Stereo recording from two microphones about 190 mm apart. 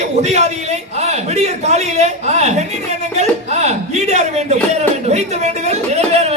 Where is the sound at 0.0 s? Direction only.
35° right (ahead or behind).